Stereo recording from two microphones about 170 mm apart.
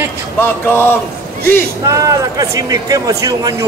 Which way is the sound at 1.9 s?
20° right (ahead or behind).